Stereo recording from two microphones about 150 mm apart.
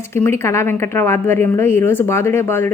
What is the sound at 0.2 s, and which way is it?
A woman's voice, 15° left (ahead or behind).